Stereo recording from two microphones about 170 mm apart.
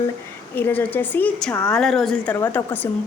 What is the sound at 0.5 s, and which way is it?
A woman's voice, 10° left (ahead or behind).